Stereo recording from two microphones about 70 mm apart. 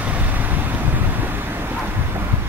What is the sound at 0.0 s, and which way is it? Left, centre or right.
Vehicle, right.